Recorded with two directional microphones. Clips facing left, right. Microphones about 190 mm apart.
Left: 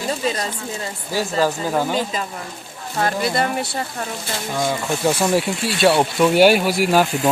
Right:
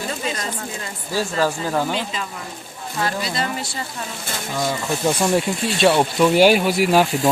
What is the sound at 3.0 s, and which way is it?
Speech, 55° left (ahead or behind).